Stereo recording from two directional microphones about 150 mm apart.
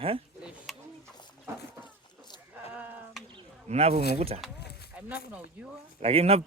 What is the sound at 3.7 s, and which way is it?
Speech, 45° right (ahead or behind).